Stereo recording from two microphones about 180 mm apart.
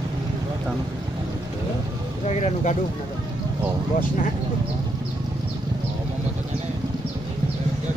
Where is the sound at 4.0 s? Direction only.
50° left (ahead or behind).